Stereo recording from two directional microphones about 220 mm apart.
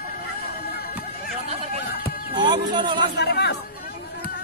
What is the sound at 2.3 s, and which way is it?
Speech, 20° right (ahead or behind).